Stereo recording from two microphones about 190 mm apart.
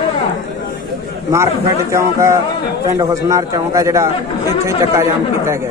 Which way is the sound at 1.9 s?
15° right (ahead or behind).